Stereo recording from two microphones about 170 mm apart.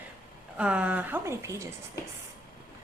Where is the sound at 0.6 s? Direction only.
5° right (ahead or behind).